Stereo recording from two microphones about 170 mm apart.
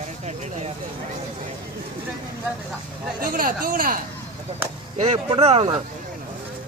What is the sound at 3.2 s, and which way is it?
Speech, 55° right (ahead or behind).